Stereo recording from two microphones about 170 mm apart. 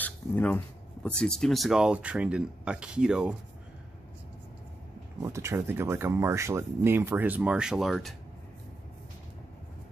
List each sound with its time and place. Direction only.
0.0 s a sound: 10° left (ahead or behind)
1.0 s speech: 5° left (ahead or behind)
5.2 s speech: 15° right (ahead or behind); by 8.1 s centre (ahead or behind)